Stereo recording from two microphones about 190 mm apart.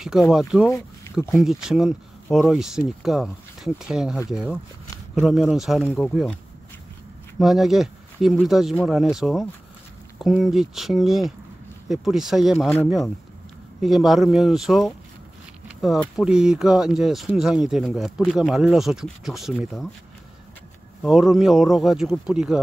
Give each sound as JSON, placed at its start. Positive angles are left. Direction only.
{"t": 0.0, "sound": "speech", "side_deg": 0}
{"t": 0.7, "sound": "a sound", "side_deg": 15}
{"t": 1.1, "sound": "speech", "side_deg": 0}
{"t": 7.3, "sound": "speech", "side_deg": 0}
{"t": 21.0, "sound": "speech", "side_deg": 0}